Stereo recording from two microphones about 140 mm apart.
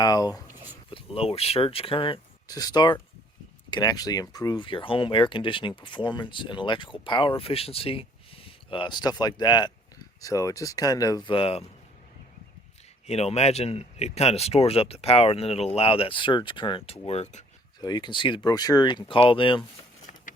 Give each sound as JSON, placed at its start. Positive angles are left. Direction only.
{"t": 0.0, "sound": "speech", "side_deg": 30}
{"t": 0.9, "sound": "speech", "side_deg": 40}
{"t": 2.5, "sound": "speech", "side_deg": 25}
{"t": 13.1, "sound": "speech", "side_deg": 50}
{"t": 17.7, "sound": "speech", "side_deg": 30}